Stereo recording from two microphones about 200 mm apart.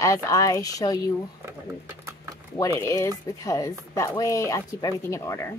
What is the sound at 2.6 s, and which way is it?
A woman's voice, 15° left (ahead or behind).